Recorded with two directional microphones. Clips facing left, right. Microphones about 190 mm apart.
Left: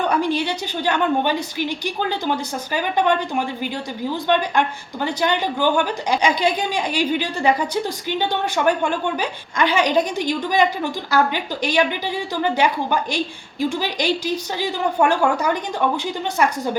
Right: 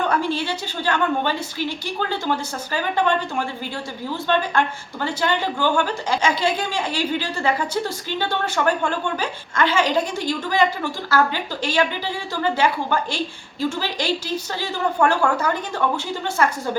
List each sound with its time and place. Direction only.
0.1 s a woman's voice: 15° left (ahead or behind)